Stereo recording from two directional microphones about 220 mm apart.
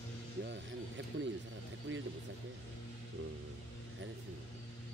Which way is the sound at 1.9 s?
55° right (ahead or behind).